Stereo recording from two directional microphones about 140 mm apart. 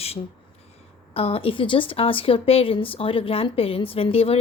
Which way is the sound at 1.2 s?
40° left (ahead or behind).